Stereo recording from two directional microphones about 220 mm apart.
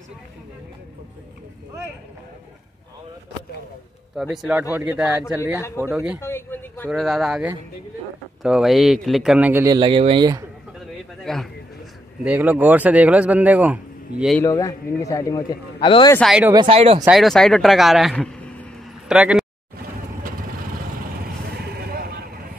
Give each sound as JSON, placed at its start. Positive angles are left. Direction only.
{"t": 4.2, "sound": "speech", "side_deg": 0}
{"t": 6.2, "sound": "a sound", "side_deg": 10}
{"t": 6.9, "sound": "speech", "side_deg": 0}
{"t": 11.3, "sound": "speech", "side_deg": 0}
{"t": 14.4, "sound": "a man's voice", "side_deg": 15}
{"t": 16.1, "sound": "speech", "side_deg": 0}
{"t": 16.5, "sound": "speech", "side_deg": -25}
{"t": 17.0, "sound": "speech", "side_deg": 0}
{"t": 21.2, "sound": "vehicle", "side_deg": -45}